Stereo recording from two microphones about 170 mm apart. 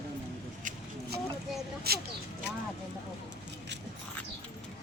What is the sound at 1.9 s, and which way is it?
Speech, 65° right (ahead or behind).